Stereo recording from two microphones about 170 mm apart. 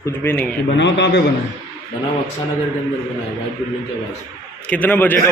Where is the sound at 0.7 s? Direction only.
90° left.